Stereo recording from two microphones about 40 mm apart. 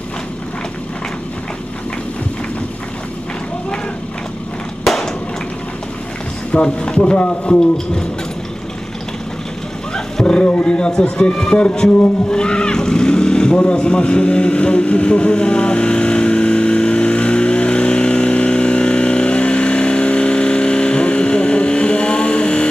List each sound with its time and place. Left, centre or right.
4.8 s a sound: centre
6.5 s speech: left
10.2 s speech: left
12.0 s vehicle: left